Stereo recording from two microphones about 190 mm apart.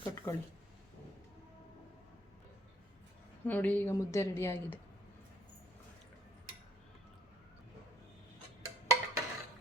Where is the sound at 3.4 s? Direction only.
10° left (ahead or behind).